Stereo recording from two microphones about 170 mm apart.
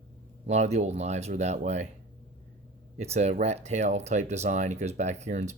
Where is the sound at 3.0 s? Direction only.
40° right (ahead or behind).